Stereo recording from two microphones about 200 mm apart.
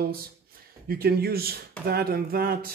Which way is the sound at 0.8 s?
50° right (ahead or behind).